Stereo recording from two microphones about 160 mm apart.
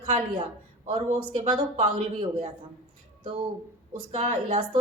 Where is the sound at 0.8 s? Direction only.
30° right (ahead or behind).